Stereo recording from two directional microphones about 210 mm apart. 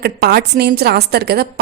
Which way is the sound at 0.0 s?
50° right (ahead or behind).